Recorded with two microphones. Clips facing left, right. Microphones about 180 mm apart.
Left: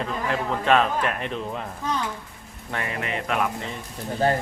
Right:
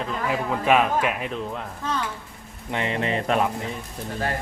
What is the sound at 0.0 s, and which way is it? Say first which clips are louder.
Speech: even; 10° right (ahead or behind).